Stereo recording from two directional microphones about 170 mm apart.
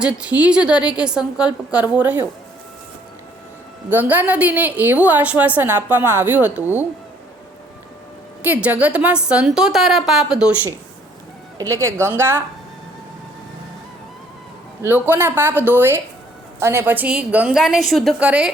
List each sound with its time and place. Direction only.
0.0 s a woman's voice: 5° right (ahead or behind)
3.8 s a woman's voice: 10° right (ahead or behind)
8.4 s a woman's voice: 10° right (ahead or behind)
14.8 s a woman's voice: 10° right (ahead or behind)